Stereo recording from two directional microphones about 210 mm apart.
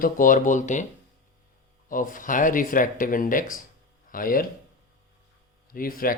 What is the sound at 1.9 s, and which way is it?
Speech, 40° left (ahead or behind).